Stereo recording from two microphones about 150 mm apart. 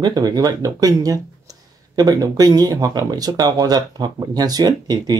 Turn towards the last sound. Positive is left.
turn(degrees=-25)  # may be behind; listen again after turning